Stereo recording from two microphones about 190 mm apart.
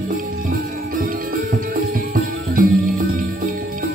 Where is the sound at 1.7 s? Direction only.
50° right (ahead or behind).